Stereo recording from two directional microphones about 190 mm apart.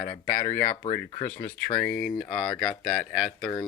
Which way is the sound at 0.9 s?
40° left (ahead or behind).